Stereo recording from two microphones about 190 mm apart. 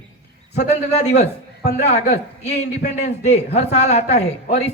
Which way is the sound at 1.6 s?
60° left (ahead or behind).